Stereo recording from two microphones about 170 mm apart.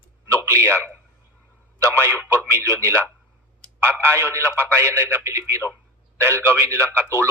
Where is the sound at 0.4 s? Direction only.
15° right (ahead or behind).